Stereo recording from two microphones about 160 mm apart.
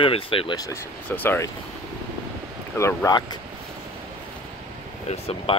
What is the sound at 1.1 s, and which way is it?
Speech, 10° left (ahead or behind).